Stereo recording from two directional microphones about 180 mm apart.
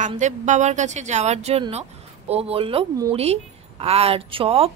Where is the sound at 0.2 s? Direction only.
40° right (ahead or behind).